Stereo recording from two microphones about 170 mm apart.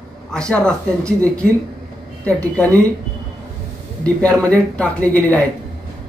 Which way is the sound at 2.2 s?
10° left (ahead or behind).